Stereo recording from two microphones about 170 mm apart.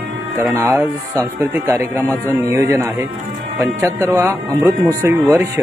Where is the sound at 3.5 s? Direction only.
15° right (ahead or behind).